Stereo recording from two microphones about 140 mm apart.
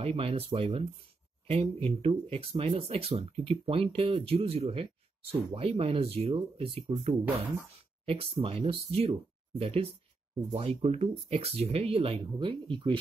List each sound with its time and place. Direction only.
0.0 s speech: 45° right (ahead or behind)
8.0 s speech: 45° right (ahead or behind)